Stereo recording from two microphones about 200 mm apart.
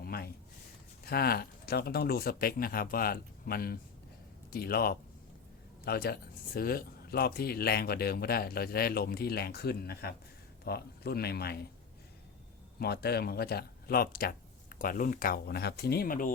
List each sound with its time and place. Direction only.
0.0 s a sound: 50° left (ahead or behind)
1.0 s speech: 50° left (ahead or behind)
12.8 s speech: 55° left (ahead or behind)